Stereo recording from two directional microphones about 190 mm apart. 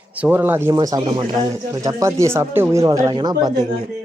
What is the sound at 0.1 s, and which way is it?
Speech, 10° right (ahead or behind).